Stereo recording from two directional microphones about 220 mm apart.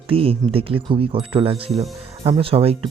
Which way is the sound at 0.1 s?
25° right (ahead or behind).